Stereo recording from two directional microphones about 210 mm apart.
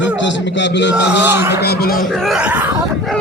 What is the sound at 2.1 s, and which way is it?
Speech, centre (ahead or behind).